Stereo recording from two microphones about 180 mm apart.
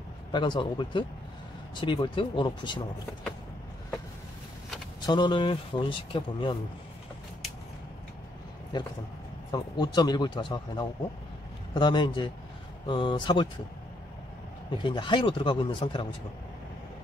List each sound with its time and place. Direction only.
0.3 s speech: 25° left (ahead or behind)
5.0 s speech: 25° left (ahead or behind)
9.5 s speech: 25° left (ahead or behind)
14.8 s speech: 25° left (ahead or behind)